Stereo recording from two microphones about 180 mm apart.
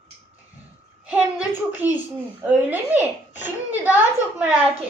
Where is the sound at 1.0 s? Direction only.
5° right (ahead or behind).